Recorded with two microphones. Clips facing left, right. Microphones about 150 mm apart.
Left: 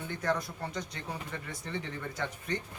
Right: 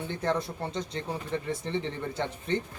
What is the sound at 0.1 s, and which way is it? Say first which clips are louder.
Speech: right 2 dB; 25° right (ahead or behind).